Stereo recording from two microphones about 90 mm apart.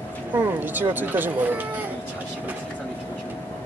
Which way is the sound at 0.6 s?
20° right (ahead or behind).